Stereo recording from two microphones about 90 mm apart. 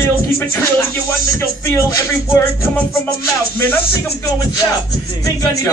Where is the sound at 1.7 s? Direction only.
30° left (ahead or behind).